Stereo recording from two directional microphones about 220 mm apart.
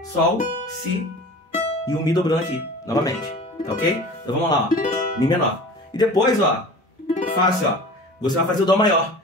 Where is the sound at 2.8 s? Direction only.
15° left (ahead or behind).